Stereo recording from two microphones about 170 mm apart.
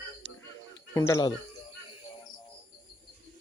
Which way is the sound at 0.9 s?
20° left (ahead or behind).